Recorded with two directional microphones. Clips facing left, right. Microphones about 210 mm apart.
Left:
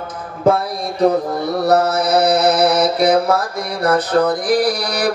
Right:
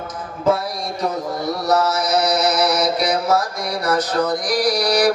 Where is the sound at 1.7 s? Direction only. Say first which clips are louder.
Left 3 dB; 60° left (ahead or behind).